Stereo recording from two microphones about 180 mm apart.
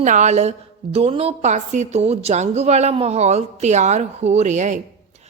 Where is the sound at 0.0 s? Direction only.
40° right (ahead or behind).